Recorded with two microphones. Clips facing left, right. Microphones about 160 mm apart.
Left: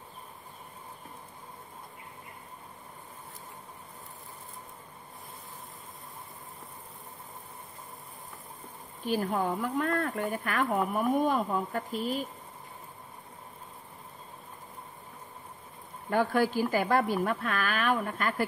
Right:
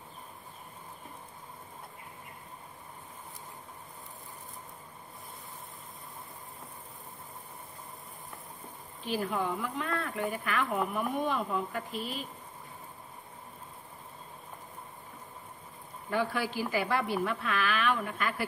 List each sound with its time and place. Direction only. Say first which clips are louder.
9.0 s a woman's voice: left 3 dB; 45° left (ahead or behind)
16.1 s a woman's voice: left 5 dB; 50° left (ahead or behind)